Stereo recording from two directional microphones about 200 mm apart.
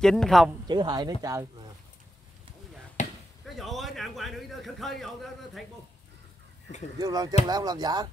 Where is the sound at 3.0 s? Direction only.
40° left (ahead or behind).